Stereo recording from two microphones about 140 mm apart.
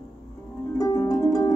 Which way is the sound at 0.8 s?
25° left (ahead or behind).